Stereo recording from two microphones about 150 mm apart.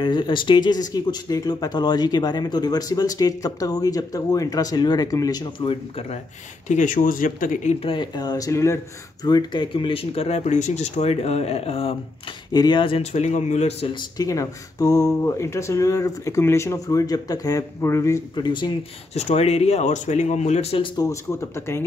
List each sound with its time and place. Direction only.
0.0 s speech: 30° left (ahead or behind)
6.7 s speech: 60° left (ahead or behind)
7.8 s speech: 35° left (ahead or behind)
12.5 s speech: 30° left (ahead or behind); by 13.8 s 45° left (ahead or behind)
13.9 s speech: 25° left (ahead or behind)
19.1 s speech: 45° left (ahead or behind)
21.0 s speech: 20° left (ahead or behind)